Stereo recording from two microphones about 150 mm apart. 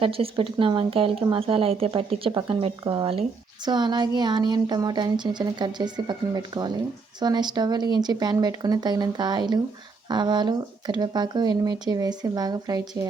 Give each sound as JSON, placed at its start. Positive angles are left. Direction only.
{"t": 0.0, "sound": "a woman's voice", "side_deg": -40}